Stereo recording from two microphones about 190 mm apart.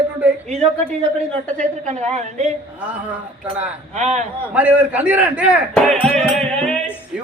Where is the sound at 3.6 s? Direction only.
35° right (ahead or behind).